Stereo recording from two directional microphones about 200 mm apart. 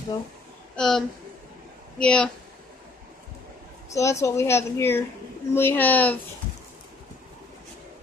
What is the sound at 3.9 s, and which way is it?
A woman's voice, 15° left (ahead or behind).